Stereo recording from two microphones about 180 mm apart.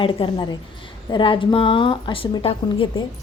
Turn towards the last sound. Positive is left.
turn(degrees=30)  # may be behind; listen again after turning